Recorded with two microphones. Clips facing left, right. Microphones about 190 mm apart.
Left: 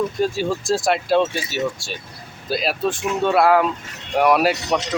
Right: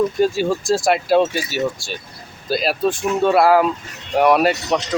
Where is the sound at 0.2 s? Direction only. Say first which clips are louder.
Right 4 dB; centre (ahead or behind).